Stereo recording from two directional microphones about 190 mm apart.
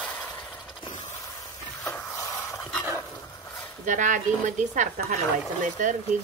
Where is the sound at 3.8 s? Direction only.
40° right (ahead or behind).